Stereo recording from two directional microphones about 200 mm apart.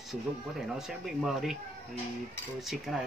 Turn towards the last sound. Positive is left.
turn(degrees=0)  # may be behind; listen again after turning